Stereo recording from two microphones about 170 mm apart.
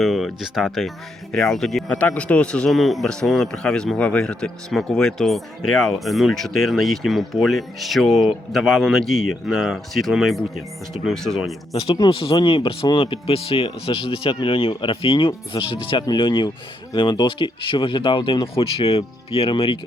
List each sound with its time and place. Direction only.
0.0 s speech: centre (ahead or behind)
11.7 s speech: 35° left (ahead or behind)